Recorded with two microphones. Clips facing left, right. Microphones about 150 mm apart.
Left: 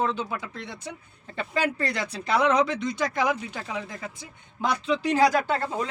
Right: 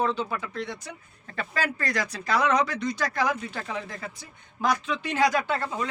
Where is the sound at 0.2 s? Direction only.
15° left (ahead or behind).